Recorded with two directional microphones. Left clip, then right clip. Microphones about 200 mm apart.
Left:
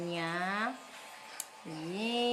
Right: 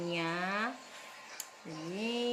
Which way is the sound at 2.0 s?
25° left (ahead or behind).